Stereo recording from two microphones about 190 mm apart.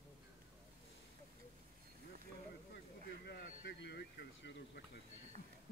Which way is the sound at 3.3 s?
65° left (ahead or behind).